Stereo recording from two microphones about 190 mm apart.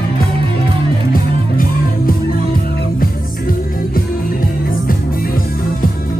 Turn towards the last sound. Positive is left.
turn(degrees=50)  # may be behind; listen again after turning